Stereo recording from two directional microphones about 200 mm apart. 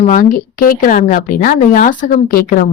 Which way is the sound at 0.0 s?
40° left (ahead or behind).